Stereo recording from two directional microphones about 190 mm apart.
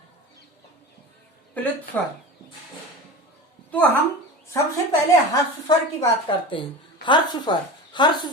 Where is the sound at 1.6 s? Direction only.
10° left (ahead or behind).